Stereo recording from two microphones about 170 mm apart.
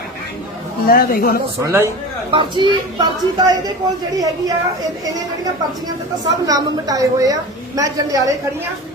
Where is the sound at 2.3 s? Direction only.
30° right (ahead or behind).